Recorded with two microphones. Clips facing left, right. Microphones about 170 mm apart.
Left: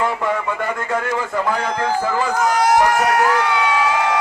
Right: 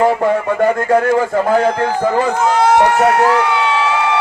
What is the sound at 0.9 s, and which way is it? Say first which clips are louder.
Speech: right 9 dB; 50° right (ahead or behind).